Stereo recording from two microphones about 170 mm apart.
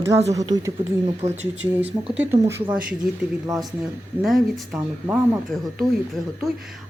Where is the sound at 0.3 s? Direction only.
20° right (ahead or behind).